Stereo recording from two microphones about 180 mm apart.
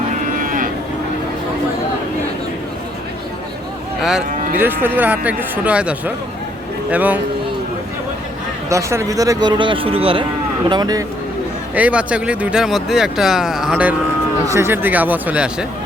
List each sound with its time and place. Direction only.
0.3 s cattle: 50° right (ahead or behind)
4.5 s speech: 10° right (ahead or behind)
8.7 s speech: 15° right (ahead or behind)
11.7 s speech: 10° right (ahead or behind)